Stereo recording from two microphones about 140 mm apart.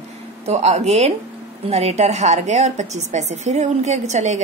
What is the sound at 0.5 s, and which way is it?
A woman's voice, 50° right (ahead or behind).